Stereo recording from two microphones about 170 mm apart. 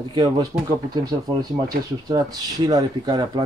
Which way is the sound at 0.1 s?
20° right (ahead or behind).